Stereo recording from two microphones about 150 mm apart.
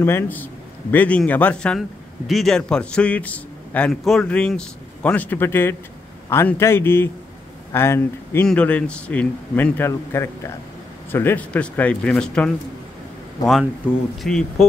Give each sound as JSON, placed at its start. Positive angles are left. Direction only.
{"t": 0.0, "sound": "a man's voice", "side_deg": 15}
{"t": 14.2, "sound": "speech", "side_deg": 0}